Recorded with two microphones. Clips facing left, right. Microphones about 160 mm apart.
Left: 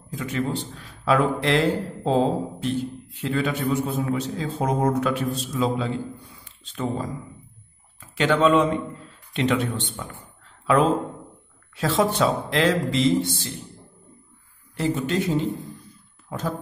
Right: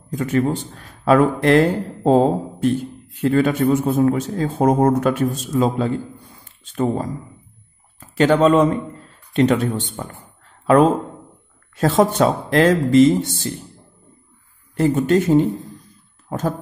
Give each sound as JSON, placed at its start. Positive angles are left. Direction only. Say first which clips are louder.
{"t": 0.1, "sound": "a man's voice", "louder": "right 7 dB", "side_deg": -50}
{"t": 14.8, "sound": "a man's voice", "louder": "right 8 dB", "side_deg": -50}